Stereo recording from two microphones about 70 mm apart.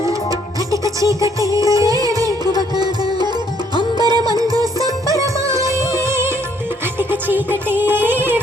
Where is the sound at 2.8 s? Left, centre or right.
Right.